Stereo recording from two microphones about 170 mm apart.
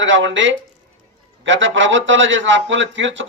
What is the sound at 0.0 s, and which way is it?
A man's voice, 90° right.